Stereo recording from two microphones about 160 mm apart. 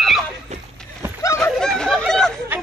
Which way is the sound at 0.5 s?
45° right (ahead or behind).